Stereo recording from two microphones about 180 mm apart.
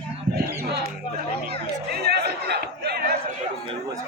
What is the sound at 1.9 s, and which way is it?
Chatter, 65° right (ahead or behind).